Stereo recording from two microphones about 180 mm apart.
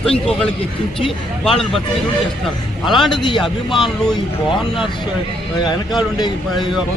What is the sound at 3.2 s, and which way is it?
Speech, 25° left (ahead or behind).